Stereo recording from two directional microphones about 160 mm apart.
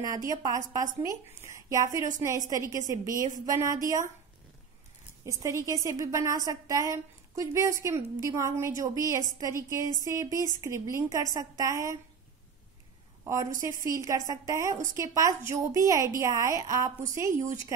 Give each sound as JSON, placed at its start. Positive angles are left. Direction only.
{"t": 0.0, "sound": "a woman's voice", "side_deg": -20}
{"t": 5.2, "sound": "a woman's voice", "side_deg": -20}
{"t": 13.2, "sound": "a woman's voice", "side_deg": -20}